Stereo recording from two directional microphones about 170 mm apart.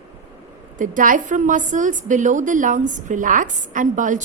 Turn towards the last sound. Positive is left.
turn(degrees=-50)  # may be behind; listen again after turning